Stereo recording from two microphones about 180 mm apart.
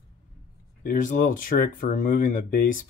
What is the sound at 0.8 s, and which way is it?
Speech, 45° left (ahead or behind).